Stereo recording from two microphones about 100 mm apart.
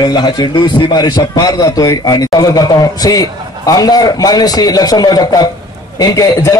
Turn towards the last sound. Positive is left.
turn(degrees=35)  # may be behind; listen again after turning